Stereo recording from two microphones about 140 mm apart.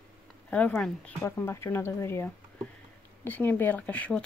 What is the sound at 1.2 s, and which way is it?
Speech, 20° left (ahead or behind).